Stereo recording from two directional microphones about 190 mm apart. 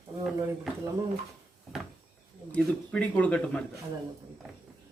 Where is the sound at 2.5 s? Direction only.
5° left (ahead or behind).